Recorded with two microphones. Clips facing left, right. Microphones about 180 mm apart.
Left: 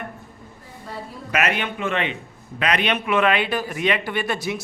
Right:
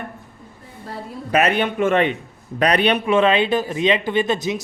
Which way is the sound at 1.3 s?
30° right (ahead or behind).